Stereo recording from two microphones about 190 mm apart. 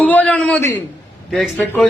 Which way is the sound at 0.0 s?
10° left (ahead or behind).